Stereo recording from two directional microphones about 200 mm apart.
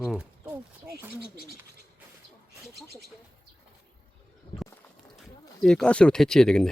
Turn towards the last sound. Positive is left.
turn(degrees=5)  # may be behind; listen again after turning